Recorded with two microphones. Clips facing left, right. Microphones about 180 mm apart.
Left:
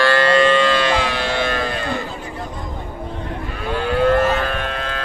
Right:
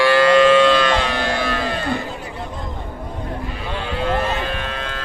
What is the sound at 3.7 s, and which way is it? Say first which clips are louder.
Cattle: left 7 dB; 50° left (ahead or behind).